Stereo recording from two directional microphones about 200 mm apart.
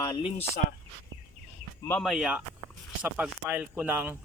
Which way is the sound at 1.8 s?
5° left (ahead or behind).